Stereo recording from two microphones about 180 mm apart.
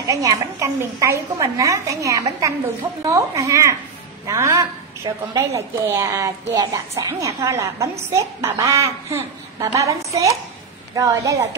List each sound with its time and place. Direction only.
0.0 s a woman's voice: 20° right (ahead or behind)